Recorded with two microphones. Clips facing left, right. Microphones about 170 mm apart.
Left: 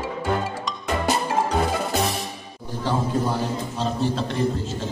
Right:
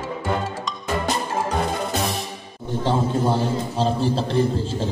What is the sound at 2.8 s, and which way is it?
A man's voice, 25° right (ahead or behind).